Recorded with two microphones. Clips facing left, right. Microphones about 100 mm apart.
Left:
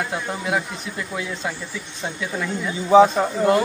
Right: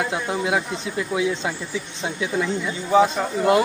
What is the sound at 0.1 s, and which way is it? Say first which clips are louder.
Speech: right 2 dB; 15° right (ahead or behind).